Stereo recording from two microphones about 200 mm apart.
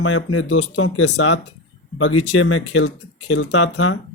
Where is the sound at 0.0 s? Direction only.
80° left.